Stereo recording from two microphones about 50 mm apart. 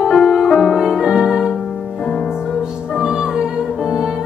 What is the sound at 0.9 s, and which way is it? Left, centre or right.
Music, centre.